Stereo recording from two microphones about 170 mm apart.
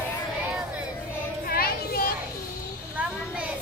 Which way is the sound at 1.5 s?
60° left (ahead or behind).